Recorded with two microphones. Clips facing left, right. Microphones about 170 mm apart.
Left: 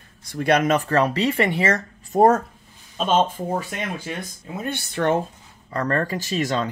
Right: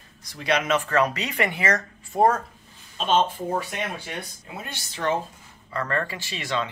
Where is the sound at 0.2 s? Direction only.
55° left (ahead or behind); by 1.8 s 30° left (ahead or behind).